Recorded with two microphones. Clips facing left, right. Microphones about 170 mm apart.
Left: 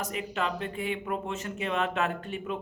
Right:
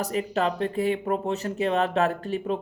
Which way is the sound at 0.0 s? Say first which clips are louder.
Right 6 dB; 35° right (ahead or behind).